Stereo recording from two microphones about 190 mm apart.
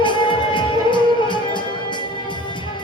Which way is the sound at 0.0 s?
25° left (ahead or behind).